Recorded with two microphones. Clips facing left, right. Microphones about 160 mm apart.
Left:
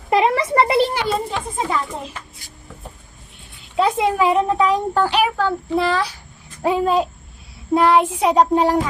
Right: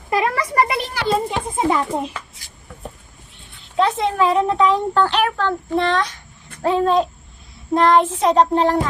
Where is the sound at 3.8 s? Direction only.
10° left (ahead or behind).